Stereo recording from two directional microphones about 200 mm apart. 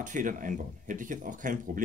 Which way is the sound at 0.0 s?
40° right (ahead or behind).